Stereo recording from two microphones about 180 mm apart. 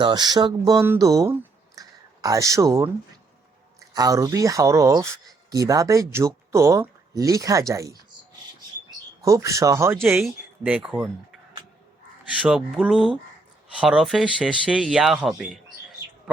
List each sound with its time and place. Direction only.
0.0 s speech: 25° right (ahead or behind)
9.2 s speech: 15° right (ahead or behind)
12.4 s speech: 5° right (ahead or behind)